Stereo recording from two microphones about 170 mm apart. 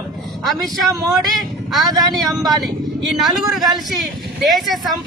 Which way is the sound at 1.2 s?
Centre (ahead or behind).